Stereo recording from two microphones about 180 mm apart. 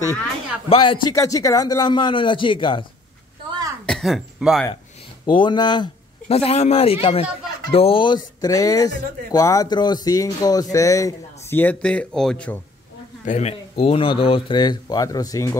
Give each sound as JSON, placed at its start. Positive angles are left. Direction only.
{"t": 0.7, "sound": "speech", "side_deg": 30}
{"t": 3.8, "sound": "speech", "side_deg": 0}
{"t": 5.2, "sound": "speech", "side_deg": 25}
{"t": 13.2, "sound": "speech", "side_deg": 40}